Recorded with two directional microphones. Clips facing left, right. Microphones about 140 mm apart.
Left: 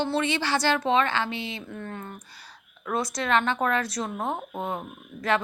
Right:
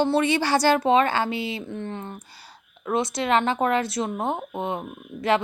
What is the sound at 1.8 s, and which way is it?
A woman's voice, 20° right (ahead or behind).